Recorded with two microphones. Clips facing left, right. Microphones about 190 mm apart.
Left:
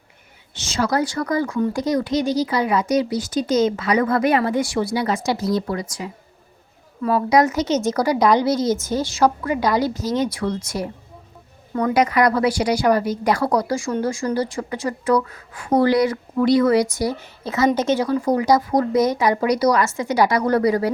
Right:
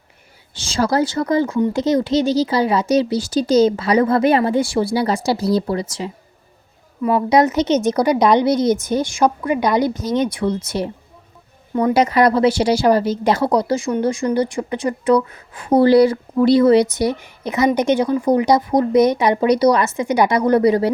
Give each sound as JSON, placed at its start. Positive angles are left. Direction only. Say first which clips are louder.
{"t": 0.5, "sound": "speech", "louder": "right 3 dB", "side_deg": -30}
{"t": 7.0, "sound": "speech", "louder": "right 2 dB", "side_deg": -25}
{"t": 11.7, "sound": "speech", "louder": "right 3 dB", "side_deg": -25}
{"t": 17.0, "sound": "speech", "louder": "right 4 dB", "side_deg": -15}